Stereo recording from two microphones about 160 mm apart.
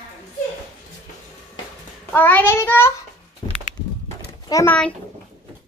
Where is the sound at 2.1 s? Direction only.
10° left (ahead or behind).